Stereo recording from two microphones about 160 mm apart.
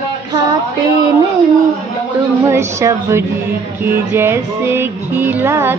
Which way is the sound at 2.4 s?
20° right (ahead or behind).